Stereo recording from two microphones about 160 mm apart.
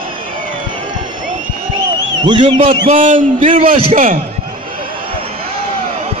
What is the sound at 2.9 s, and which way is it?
Speech, 55° right (ahead or behind).